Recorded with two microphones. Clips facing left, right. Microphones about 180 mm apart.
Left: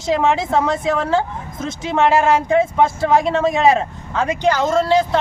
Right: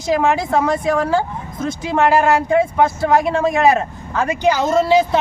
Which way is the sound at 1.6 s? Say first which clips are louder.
Right 2 dB; 25° left (ahead or behind).